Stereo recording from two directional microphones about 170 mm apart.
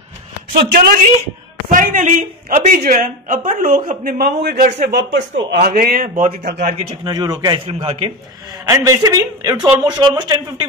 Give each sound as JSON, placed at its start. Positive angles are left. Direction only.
{"t": 0.6, "sound": "a man's voice", "side_deg": -65}
{"t": 1.7, "sound": "speech", "side_deg": -50}
{"t": 5.5, "sound": "a man's voice", "side_deg": -60}
{"t": 7.1, "sound": "speech", "side_deg": -25}
{"t": 8.6, "sound": "speech", "side_deg": -20}